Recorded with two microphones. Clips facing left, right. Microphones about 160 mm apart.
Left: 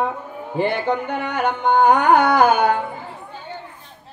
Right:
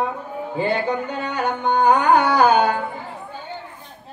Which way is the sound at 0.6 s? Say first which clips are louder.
Left 2 dB; 65° left (ahead or behind).